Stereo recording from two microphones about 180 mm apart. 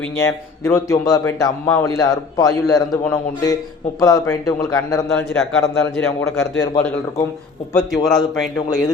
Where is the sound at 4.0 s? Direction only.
20° left (ahead or behind).